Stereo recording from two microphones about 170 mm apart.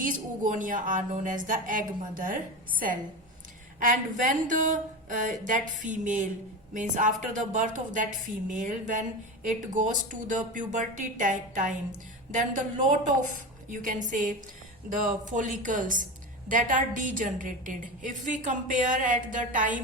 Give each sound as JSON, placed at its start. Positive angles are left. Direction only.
{"t": 0.0, "sound": "a woman's voice", "side_deg": -50}